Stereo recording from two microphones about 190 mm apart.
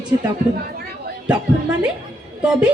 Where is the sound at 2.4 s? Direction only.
5° right (ahead or behind).